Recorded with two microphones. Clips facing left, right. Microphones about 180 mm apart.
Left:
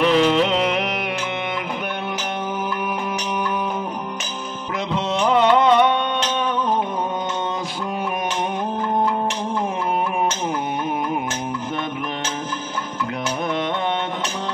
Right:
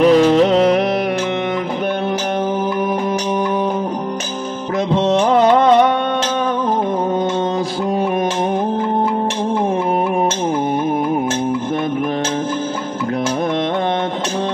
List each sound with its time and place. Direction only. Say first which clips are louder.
0.0 s music: right 6 dB; 40° right (ahead or behind)
4.9 s music: right 5 dB; 35° right (ahead or behind)